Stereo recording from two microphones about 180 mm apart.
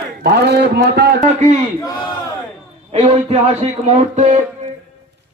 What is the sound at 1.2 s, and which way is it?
Speech, 40° right (ahead or behind).